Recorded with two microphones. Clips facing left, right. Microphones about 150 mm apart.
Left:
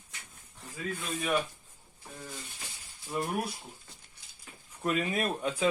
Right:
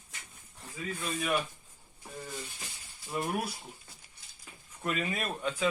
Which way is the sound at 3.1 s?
Centre (ahead or behind).